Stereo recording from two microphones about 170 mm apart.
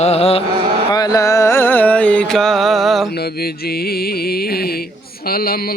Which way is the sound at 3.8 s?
65° left (ahead or behind).